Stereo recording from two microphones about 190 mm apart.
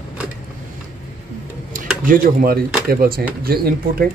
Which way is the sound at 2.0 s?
50° right (ahead or behind).